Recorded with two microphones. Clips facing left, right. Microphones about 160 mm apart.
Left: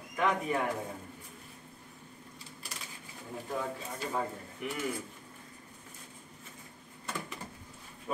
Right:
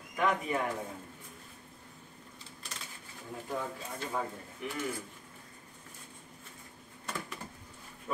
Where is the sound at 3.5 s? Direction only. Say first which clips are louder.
Left 1 dB; 5° left (ahead or behind).